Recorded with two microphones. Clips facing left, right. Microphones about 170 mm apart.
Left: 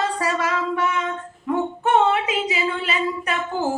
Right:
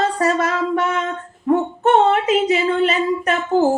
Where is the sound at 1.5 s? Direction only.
45° right (ahead or behind).